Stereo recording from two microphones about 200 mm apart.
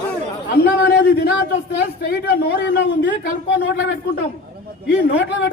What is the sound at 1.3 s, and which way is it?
Speech, 5° right (ahead or behind).